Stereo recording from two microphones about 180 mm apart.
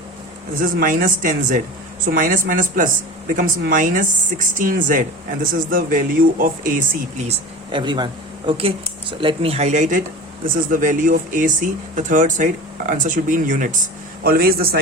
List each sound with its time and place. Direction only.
0.6 s speech: 50° right (ahead or behind)
7.3 s speech: 25° right (ahead or behind); by 13.8 s 45° right (ahead or behind)
14.3 s a man's voice: 55° right (ahead or behind)